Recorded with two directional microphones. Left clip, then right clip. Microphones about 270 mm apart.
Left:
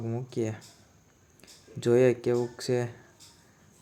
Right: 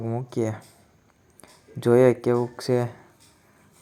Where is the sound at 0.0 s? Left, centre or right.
Centre.